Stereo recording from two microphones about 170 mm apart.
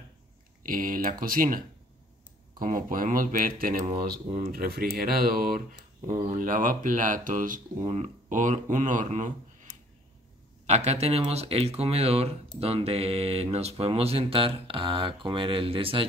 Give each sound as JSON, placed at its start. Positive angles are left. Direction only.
{"t": 0.7, "sound": "speech", "side_deg": -55}
{"t": 2.6, "sound": "speech", "side_deg": -55}
{"t": 10.7, "sound": "speech", "side_deg": -40}